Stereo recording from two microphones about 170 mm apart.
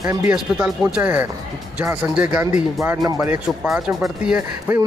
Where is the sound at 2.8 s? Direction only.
20° right (ahead or behind).